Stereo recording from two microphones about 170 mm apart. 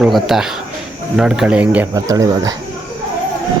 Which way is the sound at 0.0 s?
Centre (ahead or behind).